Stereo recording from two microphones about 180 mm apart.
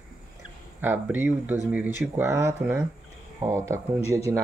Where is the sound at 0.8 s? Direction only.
10° right (ahead or behind).